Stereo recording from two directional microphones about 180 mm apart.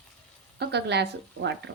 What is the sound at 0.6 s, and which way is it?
Speech, 70° right (ahead or behind).